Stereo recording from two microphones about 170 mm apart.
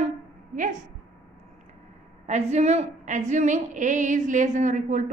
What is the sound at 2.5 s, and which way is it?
A woman's voice, 40° right (ahead or behind).